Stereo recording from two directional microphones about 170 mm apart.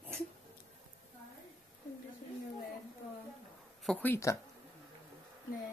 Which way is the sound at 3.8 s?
10° left (ahead or behind).